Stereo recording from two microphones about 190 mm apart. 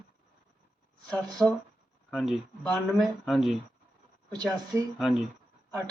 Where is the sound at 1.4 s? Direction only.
Centre (ahead or behind).